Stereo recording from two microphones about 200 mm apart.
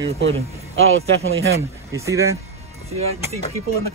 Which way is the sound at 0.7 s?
90° right.